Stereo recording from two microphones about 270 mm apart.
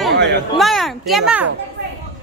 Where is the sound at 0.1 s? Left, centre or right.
Right.